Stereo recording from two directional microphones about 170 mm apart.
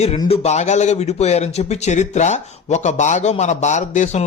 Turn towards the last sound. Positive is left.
turn(degrees=45)  # may be behind; listen again after turning